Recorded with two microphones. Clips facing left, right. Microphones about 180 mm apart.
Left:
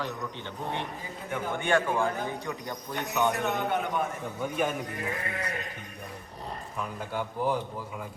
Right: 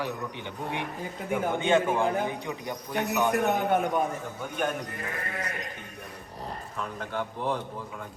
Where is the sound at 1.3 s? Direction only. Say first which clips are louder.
Right 3 dB; 20° right (ahead or behind).